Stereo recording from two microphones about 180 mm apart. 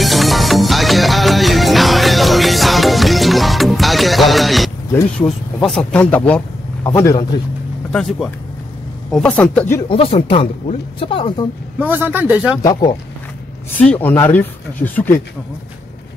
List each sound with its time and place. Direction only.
0.0 s music: centre (ahead or behind)
5.2 s a man's voice: centre (ahead or behind); by 7.2 s 20° left (ahead or behind)
7.9 s a man's voice: centre (ahead or behind)
9.8 s speech: 30° left (ahead or behind)
11.8 s a man's voice: 10° right (ahead or behind)
13.8 s a man's voice: 10° left (ahead or behind)